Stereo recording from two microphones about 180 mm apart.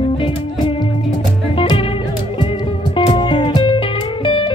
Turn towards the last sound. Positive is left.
turn(degrees=30)  # may be behind; listen again after turning